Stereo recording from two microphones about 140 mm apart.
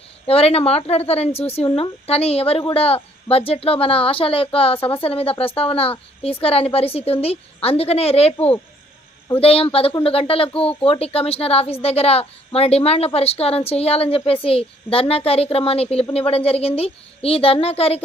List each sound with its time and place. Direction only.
0.3 s speech: 45° left (ahead or behind)